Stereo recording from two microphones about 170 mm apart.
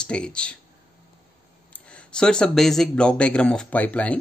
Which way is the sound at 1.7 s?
5° left (ahead or behind).